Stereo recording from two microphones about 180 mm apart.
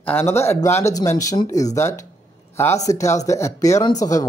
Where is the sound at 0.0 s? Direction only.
10° left (ahead or behind).